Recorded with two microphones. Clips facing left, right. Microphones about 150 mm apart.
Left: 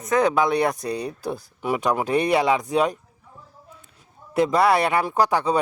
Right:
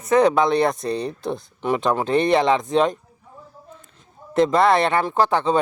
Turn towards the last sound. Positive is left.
turn(degrees=10)  # may be behind; listen again after turning